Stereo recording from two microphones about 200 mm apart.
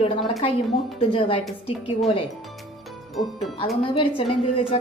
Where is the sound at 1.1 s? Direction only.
25° left (ahead or behind).